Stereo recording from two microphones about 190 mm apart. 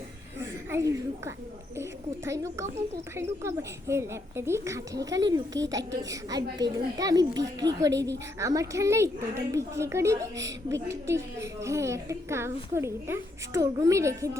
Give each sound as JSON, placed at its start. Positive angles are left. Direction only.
{"t": 0.7, "sound": "a woman's voice", "side_deg": -15}